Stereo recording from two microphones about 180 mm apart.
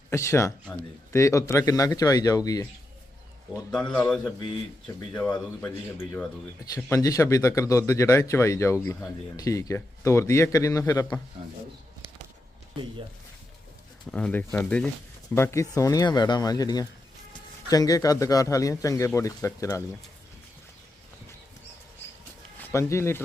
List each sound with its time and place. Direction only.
0.1 s speech: 15° left (ahead or behind)
3.5 s a man's voice: 5° left (ahead or behind)
5.1 s speech: 5° left (ahead or behind)
14.1 s speech: 5° left (ahead or behind)
22.6 s speech: 15° left (ahead or behind)